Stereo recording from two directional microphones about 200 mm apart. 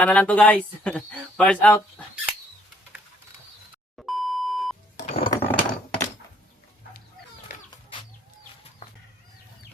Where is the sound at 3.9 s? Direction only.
Centre (ahead or behind).